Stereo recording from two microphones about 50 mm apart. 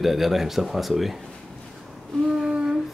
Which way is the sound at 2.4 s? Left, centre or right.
Centre.